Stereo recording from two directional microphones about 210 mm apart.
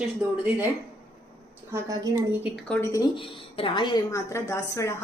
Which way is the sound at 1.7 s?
15° right (ahead or behind).